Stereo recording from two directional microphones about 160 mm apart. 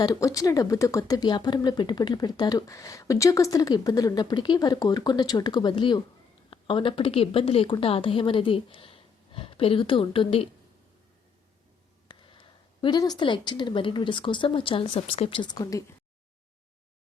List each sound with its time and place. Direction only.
0.0 s speech: 20° left (ahead or behind)
12.0 s speech: 30° left (ahead or behind)